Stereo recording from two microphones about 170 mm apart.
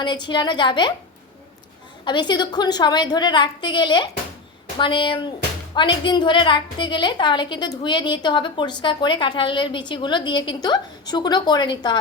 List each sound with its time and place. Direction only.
0.0 s a woman's voice: 25° left (ahead or behind)
2.0 s a woman's voice: 25° left (ahead or behind)